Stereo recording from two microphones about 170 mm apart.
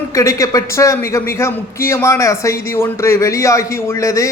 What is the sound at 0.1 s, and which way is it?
A man's voice, 20° left (ahead or behind).